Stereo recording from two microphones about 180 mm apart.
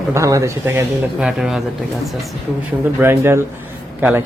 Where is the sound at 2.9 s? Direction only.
15° right (ahead or behind).